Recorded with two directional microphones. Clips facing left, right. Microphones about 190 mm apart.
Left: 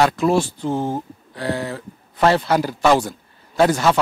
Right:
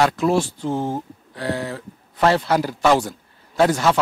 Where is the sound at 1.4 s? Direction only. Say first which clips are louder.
Left 1 dB; 15° left (ahead or behind).